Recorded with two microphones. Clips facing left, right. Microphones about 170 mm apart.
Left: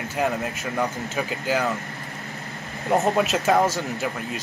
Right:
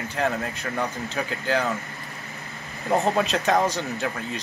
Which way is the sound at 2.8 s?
5° left (ahead or behind).